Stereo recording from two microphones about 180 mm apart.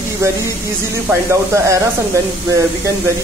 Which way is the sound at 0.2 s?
15° right (ahead or behind).